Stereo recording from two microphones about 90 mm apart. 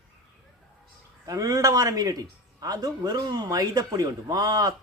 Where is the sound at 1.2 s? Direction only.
40° right (ahead or behind).